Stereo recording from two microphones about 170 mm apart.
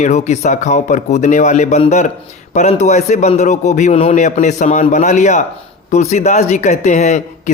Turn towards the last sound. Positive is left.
turn(degrees=45)  # may be behind; listen again after turning